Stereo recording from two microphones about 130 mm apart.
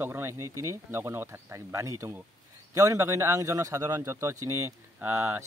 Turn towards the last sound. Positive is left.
turn(degrees=-20)  # may be behind; listen again after turning